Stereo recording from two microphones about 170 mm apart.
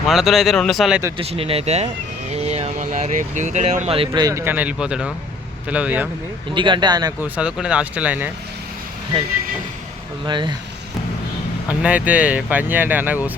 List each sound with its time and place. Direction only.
0.1 s speech: centre (ahead or behind)
1.2 s speech: 35° right (ahead or behind); by 6.1 s 10° right (ahead or behind)
6.5 s speech: 30° right (ahead or behind)
7.2 s speech: 5° right (ahead or behind)
10.2 s speech: 25° right (ahead or behind)
11.7 s speech: 10° right (ahead or behind)